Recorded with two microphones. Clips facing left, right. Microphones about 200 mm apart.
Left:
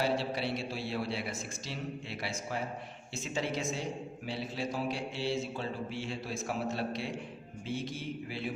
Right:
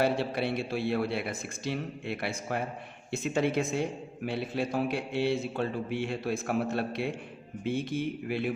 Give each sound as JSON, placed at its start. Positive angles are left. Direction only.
{"t": 0.0, "sound": "a man's voice", "side_deg": -55}